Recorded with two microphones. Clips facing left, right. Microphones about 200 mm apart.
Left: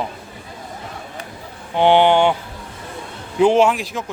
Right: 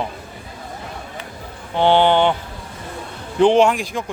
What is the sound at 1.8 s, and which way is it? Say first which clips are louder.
Speech: left 1 dB; 15° left (ahead or behind).